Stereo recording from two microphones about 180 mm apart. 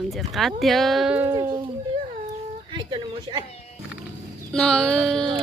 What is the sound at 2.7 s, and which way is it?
Speech, 25° right (ahead or behind).